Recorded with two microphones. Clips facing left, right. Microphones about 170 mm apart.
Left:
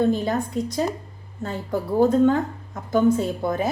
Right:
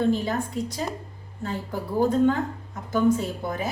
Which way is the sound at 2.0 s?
45° left (ahead or behind).